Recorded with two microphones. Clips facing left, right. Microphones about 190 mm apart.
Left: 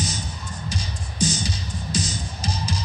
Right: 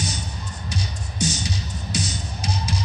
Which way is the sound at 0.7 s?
65° right (ahead or behind).